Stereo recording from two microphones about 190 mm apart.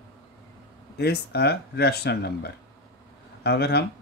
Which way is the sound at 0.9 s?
60° left (ahead or behind).